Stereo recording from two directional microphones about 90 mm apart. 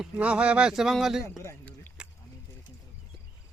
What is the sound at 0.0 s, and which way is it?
Speech, 10° right (ahead or behind).